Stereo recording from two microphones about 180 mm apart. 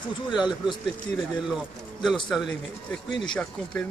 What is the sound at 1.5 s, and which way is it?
Speech, centre (ahead or behind).